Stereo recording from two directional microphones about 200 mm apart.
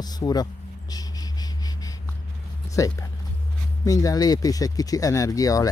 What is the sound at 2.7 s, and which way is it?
Speech, 15° left (ahead or behind).